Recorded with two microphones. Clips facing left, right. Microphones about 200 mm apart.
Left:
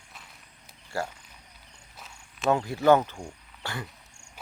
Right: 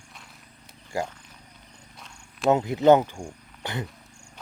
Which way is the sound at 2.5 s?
20° right (ahead or behind).